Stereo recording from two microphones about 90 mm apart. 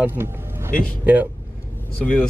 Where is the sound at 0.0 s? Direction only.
25° right (ahead or behind).